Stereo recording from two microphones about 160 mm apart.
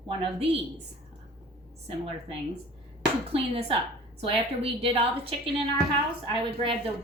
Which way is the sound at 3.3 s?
35° right (ahead or behind).